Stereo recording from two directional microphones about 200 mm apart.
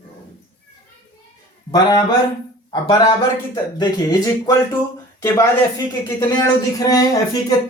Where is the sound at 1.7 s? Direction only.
20° left (ahead or behind).